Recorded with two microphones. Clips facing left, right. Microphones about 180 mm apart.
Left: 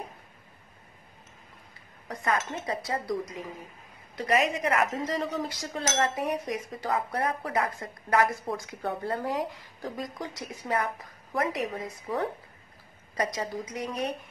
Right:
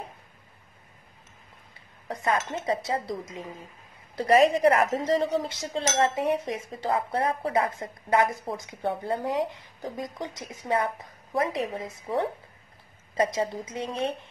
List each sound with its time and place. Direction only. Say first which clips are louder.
2.0 s speech: right 2 dB; 25° right (ahead or behind)